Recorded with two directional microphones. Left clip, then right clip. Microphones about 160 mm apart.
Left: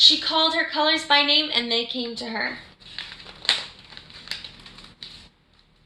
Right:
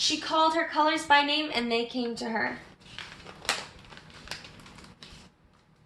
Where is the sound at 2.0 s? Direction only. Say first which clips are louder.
Left 2 dB; centre (ahead or behind).